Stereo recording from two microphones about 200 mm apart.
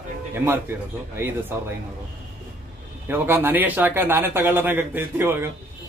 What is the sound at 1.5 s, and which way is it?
Speech, 10° right (ahead or behind).